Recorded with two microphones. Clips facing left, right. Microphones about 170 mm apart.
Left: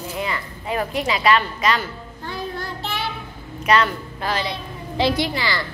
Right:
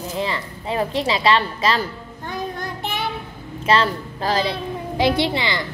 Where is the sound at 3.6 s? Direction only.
30° right (ahead or behind).